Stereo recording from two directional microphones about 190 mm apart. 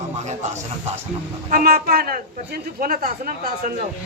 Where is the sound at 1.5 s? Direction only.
50° right (ahead or behind).